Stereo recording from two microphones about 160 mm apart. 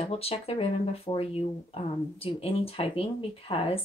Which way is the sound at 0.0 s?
40° left (ahead or behind).